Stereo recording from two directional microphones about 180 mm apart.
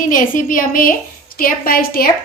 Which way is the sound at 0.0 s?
50° left (ahead or behind).